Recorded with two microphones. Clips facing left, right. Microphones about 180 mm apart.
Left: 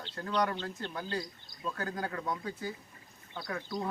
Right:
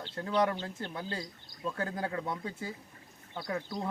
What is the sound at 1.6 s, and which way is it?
Speech, 25° right (ahead or behind).